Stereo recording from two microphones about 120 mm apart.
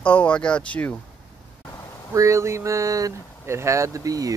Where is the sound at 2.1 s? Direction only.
25° right (ahead or behind).